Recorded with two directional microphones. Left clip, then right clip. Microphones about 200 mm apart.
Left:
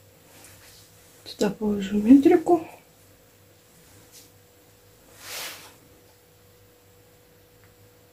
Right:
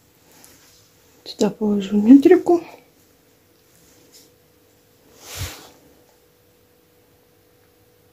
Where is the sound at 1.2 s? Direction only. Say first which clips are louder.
Right 5 dB; 40° right (ahead or behind).